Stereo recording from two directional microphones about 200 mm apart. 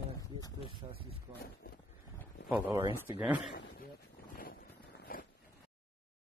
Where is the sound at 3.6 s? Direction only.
60° left (ahead or behind).